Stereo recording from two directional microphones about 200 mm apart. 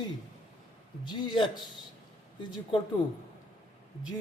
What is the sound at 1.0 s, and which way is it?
Speech, 20° left (ahead or behind).